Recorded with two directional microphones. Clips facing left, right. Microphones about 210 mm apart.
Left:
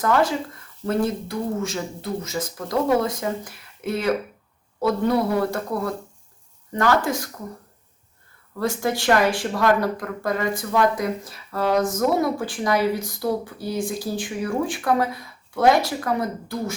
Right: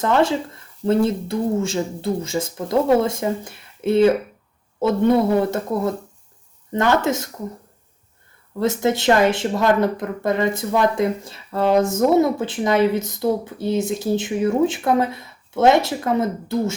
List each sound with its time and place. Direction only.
0.0 s speech: 25° right (ahead or behind)
8.5 s speech: 20° right (ahead or behind)